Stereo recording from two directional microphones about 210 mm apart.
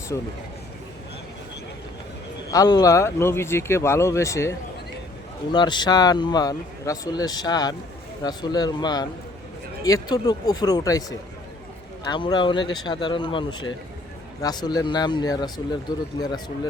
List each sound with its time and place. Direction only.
0.1 s speech: 15° left (ahead or behind)
2.5 s speech: 20° left (ahead or behind)
12.0 s speech: 20° left (ahead or behind)